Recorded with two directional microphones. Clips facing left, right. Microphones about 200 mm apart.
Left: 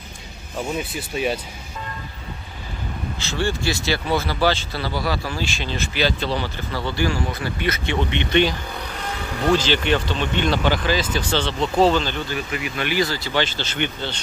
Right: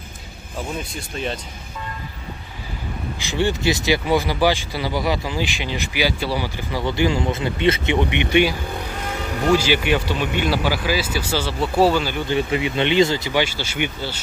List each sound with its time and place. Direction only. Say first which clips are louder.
0.7 s speech: left 3 dB; 5° left (ahead or behind)
3.2 s speech: right 3 dB; 15° right (ahead or behind)
12.3 s speech: right 6 dB; 25° right (ahead or behind); by 14.2 s 10° right (ahead or behind)